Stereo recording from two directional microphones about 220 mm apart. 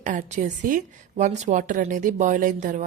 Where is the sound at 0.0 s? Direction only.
35° right (ahead or behind).